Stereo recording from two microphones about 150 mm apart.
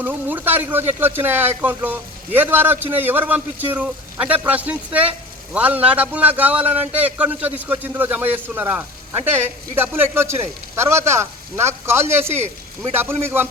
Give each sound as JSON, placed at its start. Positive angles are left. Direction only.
{"t": 0.0, "sound": "speech", "side_deg": -10}